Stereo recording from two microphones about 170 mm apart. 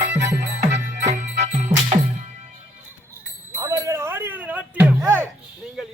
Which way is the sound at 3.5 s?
15° right (ahead or behind).